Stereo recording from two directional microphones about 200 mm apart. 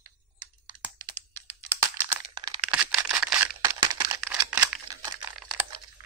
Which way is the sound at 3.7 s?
20° right (ahead or behind).